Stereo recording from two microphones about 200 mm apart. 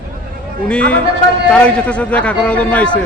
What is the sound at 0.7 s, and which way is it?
A man's voice, 5° left (ahead or behind).